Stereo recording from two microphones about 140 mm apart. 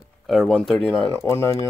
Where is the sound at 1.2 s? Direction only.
20° left (ahead or behind).